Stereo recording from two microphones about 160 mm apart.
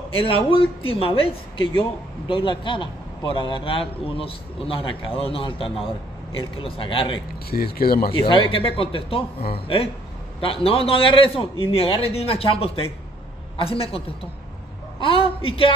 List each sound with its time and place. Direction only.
0.1 s a man's voice: 35° left (ahead or behind)
7.5 s speech: 75° left (ahead or behind)
8.1 s a man's voice: 35° left (ahead or behind)